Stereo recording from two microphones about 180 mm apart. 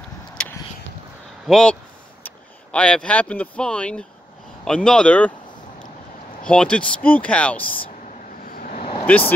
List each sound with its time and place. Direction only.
0.4 s a sound: 5° left (ahead or behind)
1.5 s speech: 5° left (ahead or behind)
6.4 s speech: 5° left (ahead or behind)
8.4 s vehicle: 50° left (ahead or behind)
9.0 s speech: 10° left (ahead or behind)